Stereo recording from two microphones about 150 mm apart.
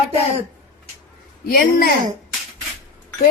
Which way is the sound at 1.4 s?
75° left (ahead or behind).